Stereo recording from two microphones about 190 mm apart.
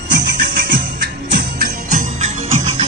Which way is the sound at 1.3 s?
50° right (ahead or behind).